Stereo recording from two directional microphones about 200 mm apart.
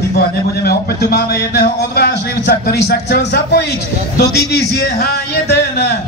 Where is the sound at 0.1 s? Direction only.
55° left (ahead or behind).